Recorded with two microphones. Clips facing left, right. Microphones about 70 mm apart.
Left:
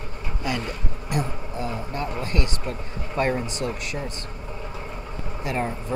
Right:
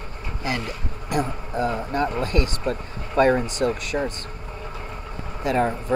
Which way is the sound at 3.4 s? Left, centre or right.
Right.